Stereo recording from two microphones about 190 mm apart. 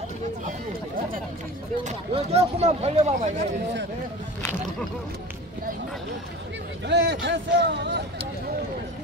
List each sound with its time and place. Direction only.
1.9 s speech: 35° right (ahead or behind)
6.9 s speech: 65° right (ahead or behind)